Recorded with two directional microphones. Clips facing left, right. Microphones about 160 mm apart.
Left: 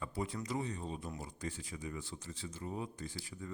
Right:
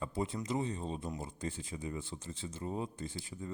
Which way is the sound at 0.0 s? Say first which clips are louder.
Right 3 dB; 25° right (ahead or behind).